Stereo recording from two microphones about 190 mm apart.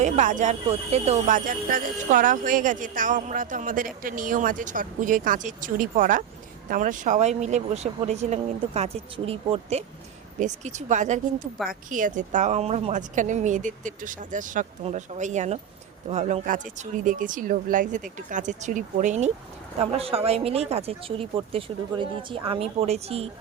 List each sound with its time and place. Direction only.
0.0 s speech: 40° right (ahead or behind)